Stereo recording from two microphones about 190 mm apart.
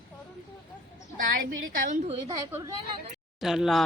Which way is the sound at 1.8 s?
40° right (ahead or behind).